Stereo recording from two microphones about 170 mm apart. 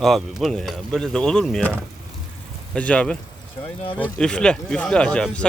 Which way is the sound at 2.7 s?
5° left (ahead or behind).